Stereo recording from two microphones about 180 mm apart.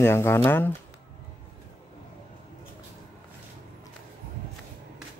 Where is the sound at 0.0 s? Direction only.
15° left (ahead or behind).